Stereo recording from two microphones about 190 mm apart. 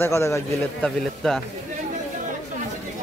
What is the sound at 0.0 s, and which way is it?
Speech, 15° left (ahead or behind).